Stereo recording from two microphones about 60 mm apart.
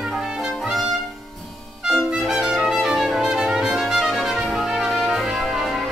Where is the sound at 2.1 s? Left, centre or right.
Centre.